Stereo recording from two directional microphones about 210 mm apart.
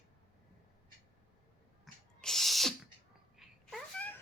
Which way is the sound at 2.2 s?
Centre (ahead or behind).